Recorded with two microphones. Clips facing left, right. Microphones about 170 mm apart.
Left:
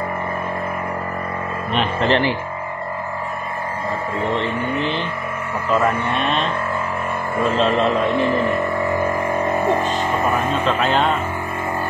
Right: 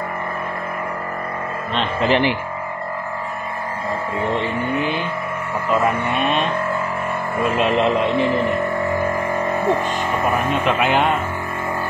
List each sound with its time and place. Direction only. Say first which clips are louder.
2.0 s speech: right 1 dB; 15° right (ahead or behind)
4.4 s speech: even; 10° right (ahead or behind)
6.1 s speech: right 1 dB; 10° right (ahead or behind)
7.5 s speech: right 1 dB; 15° right (ahead or behind)
10.6 s speech: right 1 dB; 15° right (ahead or behind)